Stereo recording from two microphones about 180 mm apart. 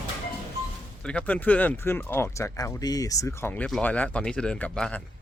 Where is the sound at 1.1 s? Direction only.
5° left (ahead or behind).